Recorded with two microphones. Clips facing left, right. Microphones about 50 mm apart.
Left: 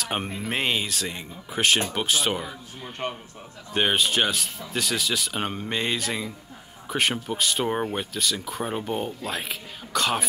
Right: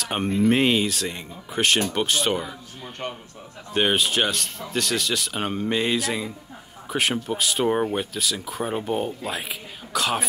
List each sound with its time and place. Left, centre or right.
0.0 s speech: centre